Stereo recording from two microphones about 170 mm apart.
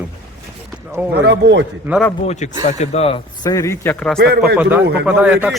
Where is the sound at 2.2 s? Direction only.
45° left (ahead or behind).